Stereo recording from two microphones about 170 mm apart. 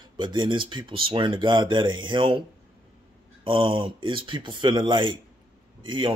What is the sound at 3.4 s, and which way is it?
Speech, 30° right (ahead or behind).